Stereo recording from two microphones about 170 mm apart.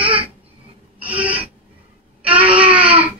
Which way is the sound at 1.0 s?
10° right (ahead or behind).